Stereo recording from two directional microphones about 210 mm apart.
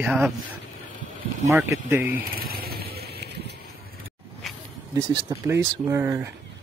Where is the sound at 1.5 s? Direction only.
10° right (ahead or behind).